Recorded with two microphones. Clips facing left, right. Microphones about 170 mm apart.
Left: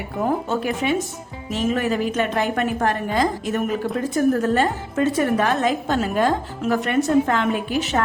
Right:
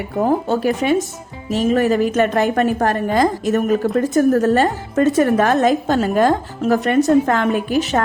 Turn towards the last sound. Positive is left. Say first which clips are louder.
# right 4 dB
turn(degrees=-45)  # may be behind; listen again after turning